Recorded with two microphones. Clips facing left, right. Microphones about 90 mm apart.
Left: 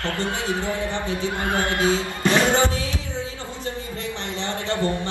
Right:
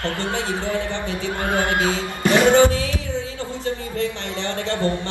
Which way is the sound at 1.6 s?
20° right (ahead or behind).